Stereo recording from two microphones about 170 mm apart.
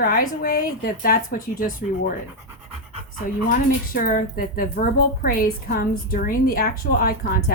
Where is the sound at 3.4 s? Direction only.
55° left (ahead or behind).